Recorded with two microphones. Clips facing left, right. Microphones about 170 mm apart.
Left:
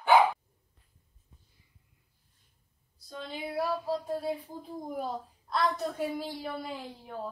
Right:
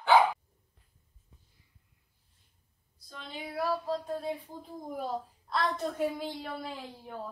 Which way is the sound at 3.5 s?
10° left (ahead or behind).